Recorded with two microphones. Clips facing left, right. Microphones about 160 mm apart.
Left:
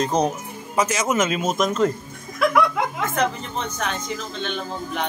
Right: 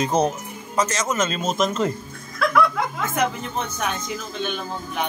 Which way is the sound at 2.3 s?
15° left (ahead or behind).